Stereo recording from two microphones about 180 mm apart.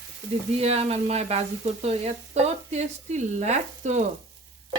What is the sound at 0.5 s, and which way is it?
Speech, 35° right (ahead or behind).